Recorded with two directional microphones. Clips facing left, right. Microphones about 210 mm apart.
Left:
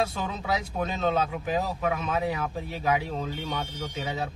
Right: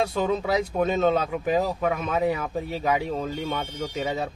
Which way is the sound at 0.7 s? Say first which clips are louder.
Right 5 dB; 50° right (ahead or behind).